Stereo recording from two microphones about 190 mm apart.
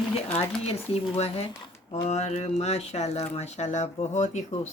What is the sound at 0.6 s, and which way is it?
Speech, 35° left (ahead or behind).